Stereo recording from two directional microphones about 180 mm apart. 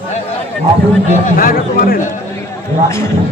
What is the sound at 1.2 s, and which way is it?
Speech, 50° left (ahead or behind).